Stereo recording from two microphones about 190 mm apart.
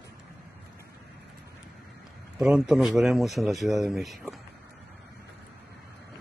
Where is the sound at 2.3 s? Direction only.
5° right (ahead or behind).